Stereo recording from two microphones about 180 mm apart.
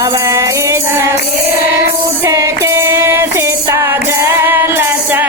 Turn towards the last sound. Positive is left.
turn(degrees=-10)  # may be behind; listen again after turning